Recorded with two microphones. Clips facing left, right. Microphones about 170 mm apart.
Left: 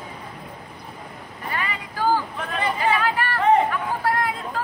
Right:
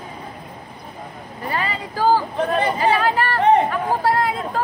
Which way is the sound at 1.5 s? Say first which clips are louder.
Right 5 dB; 35° right (ahead or behind).